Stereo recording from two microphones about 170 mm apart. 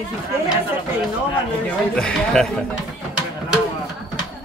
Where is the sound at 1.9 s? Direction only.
5° left (ahead or behind).